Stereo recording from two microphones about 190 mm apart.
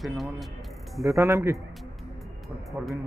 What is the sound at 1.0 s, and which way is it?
Speech, 15° right (ahead or behind).